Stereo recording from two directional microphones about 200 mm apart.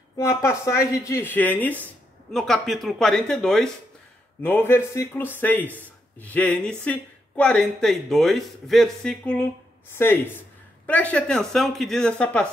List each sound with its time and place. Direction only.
0.2 s speech: 15° left (ahead or behind)